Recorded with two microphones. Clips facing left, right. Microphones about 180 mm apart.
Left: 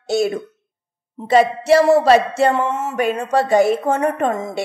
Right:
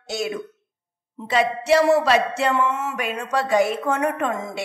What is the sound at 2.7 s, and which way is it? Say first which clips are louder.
A woman's voice: left 6 dB; 25° left (ahead or behind).